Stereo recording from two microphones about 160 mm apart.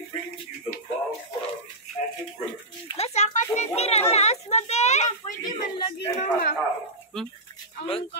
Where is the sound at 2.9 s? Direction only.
40° left (ahead or behind).